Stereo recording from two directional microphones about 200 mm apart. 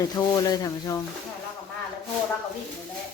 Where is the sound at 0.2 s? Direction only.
20° left (ahead or behind).